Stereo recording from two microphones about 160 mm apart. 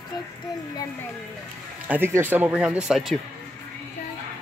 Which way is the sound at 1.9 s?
15° right (ahead or behind).